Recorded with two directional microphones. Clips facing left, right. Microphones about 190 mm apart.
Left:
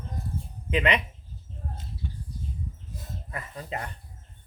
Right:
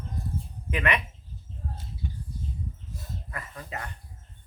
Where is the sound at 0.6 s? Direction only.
20° left (ahead or behind).